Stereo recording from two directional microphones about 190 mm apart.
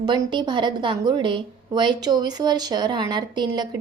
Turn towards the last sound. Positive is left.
turn(degrees=-25)  # may be behind; listen again after turning